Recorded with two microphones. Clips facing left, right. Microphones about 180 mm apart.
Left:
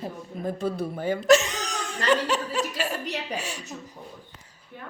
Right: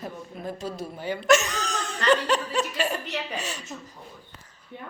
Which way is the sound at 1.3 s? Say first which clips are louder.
Left 2 dB; 30° left (ahead or behind).